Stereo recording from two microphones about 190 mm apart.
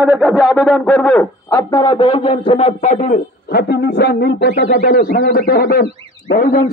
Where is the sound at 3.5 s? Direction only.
60° left (ahead or behind).